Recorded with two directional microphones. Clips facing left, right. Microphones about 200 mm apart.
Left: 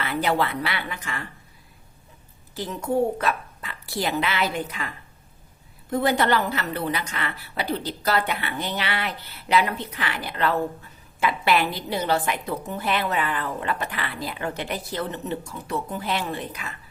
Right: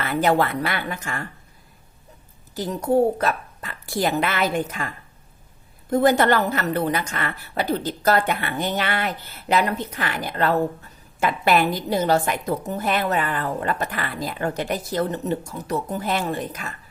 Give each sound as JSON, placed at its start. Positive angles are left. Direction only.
{"t": 0.0, "sound": "a woman's voice", "side_deg": -45}
{"t": 2.6, "sound": "speech", "side_deg": -40}
{"t": 5.9, "sound": "a woman's voice", "side_deg": -45}